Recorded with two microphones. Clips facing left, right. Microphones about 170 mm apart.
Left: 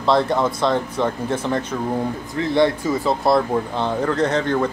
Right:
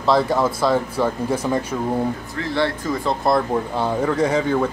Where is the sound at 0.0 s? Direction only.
Centre (ahead or behind).